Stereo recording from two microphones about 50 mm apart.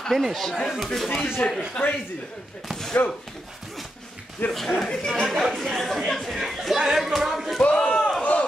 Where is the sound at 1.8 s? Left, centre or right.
Left.